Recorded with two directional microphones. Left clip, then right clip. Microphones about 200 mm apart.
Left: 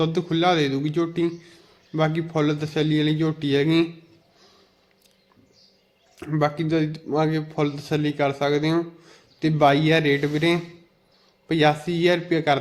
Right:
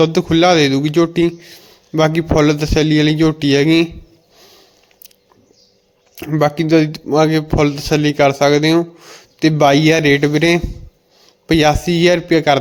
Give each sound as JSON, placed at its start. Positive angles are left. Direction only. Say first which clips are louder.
{"t": 0.0, "sound": "speech", "louder": "right 10 dB", "side_deg": -35}
{"t": 4.4, "sound": "sniff", "louder": "right 12 dB", "side_deg": -30}
{"t": 6.1, "sound": "speech", "louder": "right 8 dB", "side_deg": -35}